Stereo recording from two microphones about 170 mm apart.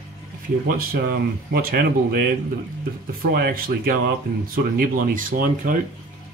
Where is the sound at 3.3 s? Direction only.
60° right (ahead or behind).